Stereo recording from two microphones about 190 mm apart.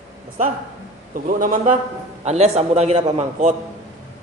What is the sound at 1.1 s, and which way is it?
A man's voice, 45° right (ahead or behind).